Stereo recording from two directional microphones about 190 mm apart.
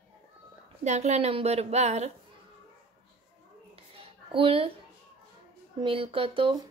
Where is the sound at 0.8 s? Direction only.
35° right (ahead or behind).